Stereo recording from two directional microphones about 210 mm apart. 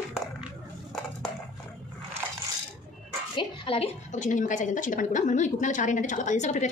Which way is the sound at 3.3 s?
25° left (ahead or behind).